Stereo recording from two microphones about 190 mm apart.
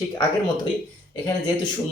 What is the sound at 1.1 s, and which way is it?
Speech, 20° left (ahead or behind).